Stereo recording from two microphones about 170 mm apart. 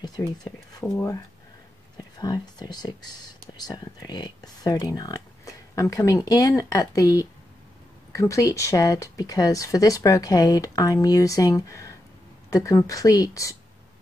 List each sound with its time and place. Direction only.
0.7 s speech: 20° left (ahead or behind)